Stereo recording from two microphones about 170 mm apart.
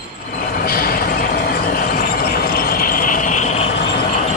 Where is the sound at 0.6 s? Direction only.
60° left (ahead or behind); by 3.7 s 40° left (ahead or behind).